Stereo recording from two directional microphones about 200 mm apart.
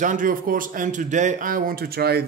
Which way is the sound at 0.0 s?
40° right (ahead or behind).